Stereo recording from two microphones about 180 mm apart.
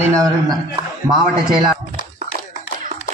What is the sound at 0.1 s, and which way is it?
Speech, 20° right (ahead or behind).